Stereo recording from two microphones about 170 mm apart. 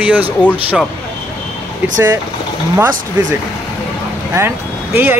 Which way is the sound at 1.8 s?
10° right (ahead or behind).